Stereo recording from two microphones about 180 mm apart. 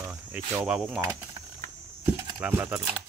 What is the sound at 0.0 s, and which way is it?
Speech, 10° right (ahead or behind).